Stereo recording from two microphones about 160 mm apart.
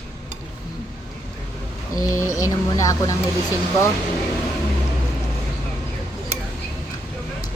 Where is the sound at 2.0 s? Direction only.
20° left (ahead or behind).